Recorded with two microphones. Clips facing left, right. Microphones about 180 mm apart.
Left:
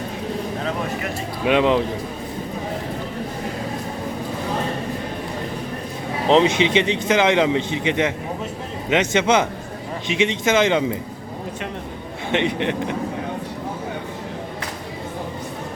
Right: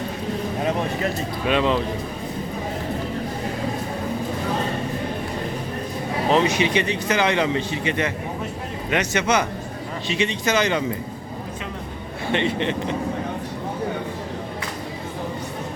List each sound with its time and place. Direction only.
1.5 s a man's voice: 15° left (ahead or behind)
6.2 s speech: 20° left (ahead or behind)
12.3 s a man's voice: 15° left (ahead or behind)